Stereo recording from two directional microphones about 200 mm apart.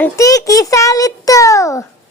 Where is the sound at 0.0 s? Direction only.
15° left (ahead or behind).